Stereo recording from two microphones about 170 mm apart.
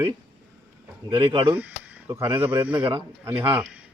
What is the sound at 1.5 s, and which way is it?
A man's voice, 10° right (ahead or behind).